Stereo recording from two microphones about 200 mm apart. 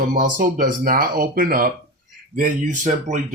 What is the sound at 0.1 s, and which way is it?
Speech, 40° right (ahead or behind).